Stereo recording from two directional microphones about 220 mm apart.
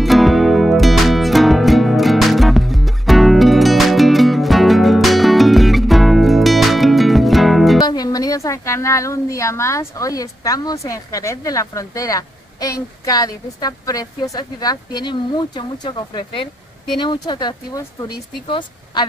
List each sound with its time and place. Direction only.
0.0 s music: centre (ahead or behind)
7.8 s a woman's voice: 15° left (ahead or behind)